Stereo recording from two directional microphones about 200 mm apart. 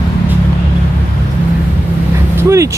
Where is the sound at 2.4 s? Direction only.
15° right (ahead or behind).